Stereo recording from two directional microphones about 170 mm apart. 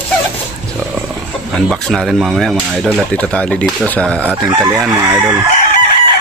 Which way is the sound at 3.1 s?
5° left (ahead or behind).